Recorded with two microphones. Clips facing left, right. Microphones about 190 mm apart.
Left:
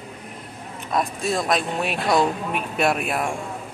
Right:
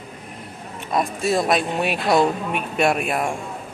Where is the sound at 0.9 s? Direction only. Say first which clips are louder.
Right 2 dB; centre (ahead or behind).